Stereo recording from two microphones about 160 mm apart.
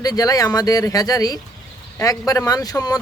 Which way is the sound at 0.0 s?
25° left (ahead or behind).